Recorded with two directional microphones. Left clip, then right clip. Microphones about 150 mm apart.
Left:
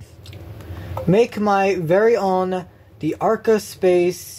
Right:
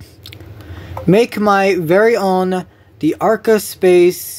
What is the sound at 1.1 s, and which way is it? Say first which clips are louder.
Speech: right 5 dB; 60° right (ahead or behind).